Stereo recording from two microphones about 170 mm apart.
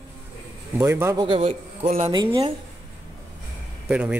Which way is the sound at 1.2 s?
35° right (ahead or behind).